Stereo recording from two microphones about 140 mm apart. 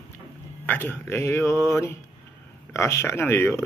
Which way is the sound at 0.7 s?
15° left (ahead or behind).